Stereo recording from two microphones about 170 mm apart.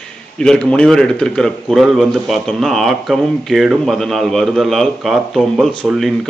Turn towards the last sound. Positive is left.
turn(degrees=0)  # may be behind; listen again after turning